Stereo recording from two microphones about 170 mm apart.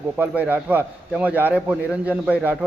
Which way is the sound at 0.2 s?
10° right (ahead or behind).